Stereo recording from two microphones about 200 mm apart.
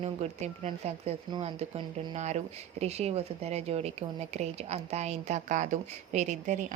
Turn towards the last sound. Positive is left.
turn(degrees=-35)  # may be behind; listen again after turning